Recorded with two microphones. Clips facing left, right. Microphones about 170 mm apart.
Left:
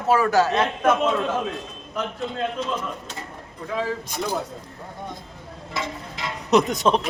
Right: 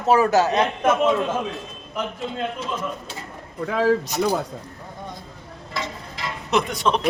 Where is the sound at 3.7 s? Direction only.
85° right.